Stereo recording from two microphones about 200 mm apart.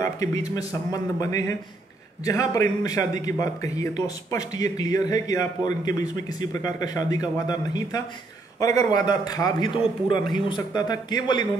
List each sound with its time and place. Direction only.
0.0 s a man's voice: 15° left (ahead or behind)